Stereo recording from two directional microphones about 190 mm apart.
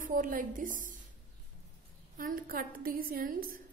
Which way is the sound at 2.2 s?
50° right (ahead or behind).